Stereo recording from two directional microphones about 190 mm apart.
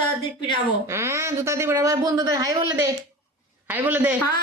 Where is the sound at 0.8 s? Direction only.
15° right (ahead or behind).